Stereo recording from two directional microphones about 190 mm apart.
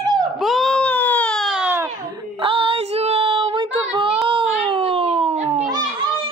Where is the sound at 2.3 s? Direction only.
30° right (ahead or behind).